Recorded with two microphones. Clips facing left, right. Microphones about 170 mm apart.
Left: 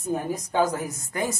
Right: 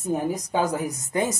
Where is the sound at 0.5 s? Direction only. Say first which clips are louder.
Left 3 dB; 20° right (ahead or behind).